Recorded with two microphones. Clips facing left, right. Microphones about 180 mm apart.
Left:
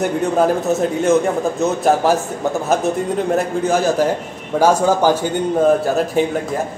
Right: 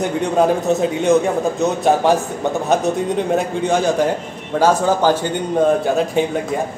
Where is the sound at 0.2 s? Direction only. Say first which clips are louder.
Right 2 dB; centre (ahead or behind).